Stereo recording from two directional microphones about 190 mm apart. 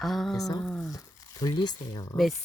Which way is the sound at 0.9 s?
20° left (ahead or behind).